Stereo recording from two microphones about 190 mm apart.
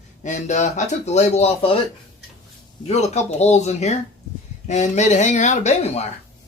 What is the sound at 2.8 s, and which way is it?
Speech, 35° left (ahead or behind).